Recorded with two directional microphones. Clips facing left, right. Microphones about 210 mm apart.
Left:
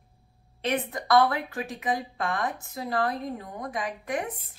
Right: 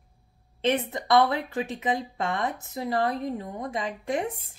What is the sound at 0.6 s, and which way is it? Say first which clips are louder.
Speech: right 3 dB; 25° right (ahead or behind).